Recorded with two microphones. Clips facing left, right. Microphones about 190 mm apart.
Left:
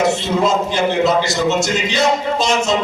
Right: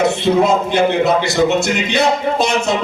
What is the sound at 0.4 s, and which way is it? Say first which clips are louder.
A man's voice: right 2 dB; 60° right (ahead or behind).